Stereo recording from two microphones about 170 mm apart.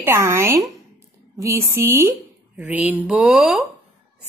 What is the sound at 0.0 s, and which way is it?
Speech, 15° right (ahead or behind).